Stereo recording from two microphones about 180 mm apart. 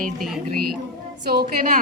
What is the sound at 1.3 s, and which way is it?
Speech, 55° right (ahead or behind).